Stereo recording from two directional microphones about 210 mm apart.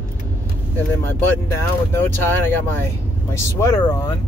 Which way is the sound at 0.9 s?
10° left (ahead or behind).